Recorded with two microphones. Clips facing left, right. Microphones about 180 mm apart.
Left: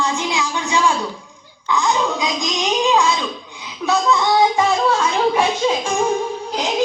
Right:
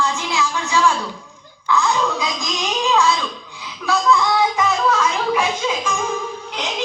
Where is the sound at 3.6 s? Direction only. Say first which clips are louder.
Left 1 dB; 20° left (ahead or behind).